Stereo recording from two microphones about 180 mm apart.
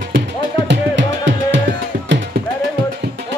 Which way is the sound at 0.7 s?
85° right.